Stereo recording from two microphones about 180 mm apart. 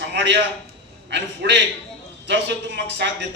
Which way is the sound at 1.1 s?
70° right (ahead or behind).